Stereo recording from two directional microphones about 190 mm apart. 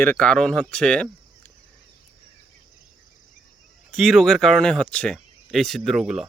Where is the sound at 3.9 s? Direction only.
Centre (ahead or behind).